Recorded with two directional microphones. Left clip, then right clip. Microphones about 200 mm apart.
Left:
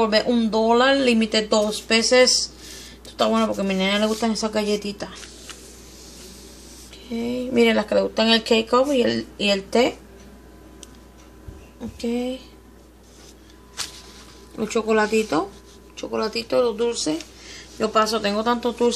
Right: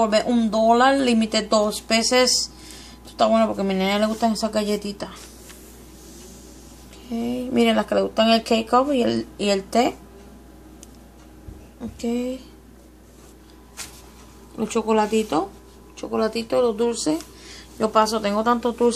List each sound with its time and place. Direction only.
0.0 s speech: 5° left (ahead or behind)
7.1 s speech: 5° left (ahead or behind)
12.0 s speech: 5° left (ahead or behind)
14.6 s speech: 5° left (ahead or behind)